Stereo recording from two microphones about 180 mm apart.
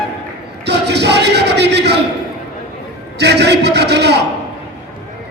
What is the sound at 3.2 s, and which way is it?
Speech, 70° right (ahead or behind).